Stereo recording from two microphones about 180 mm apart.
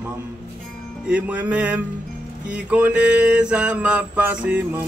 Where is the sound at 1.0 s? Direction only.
10° right (ahead or behind).